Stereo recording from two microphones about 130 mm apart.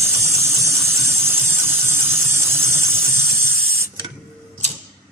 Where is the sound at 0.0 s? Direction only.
20° right (ahead or behind).